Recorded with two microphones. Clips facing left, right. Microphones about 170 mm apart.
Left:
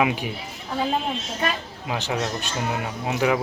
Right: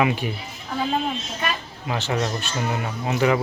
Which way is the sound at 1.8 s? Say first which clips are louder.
Right 2 dB; 10° left (ahead or behind).